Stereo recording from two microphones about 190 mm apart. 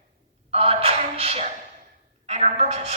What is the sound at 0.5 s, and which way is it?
A man's voice, 30° right (ahead or behind).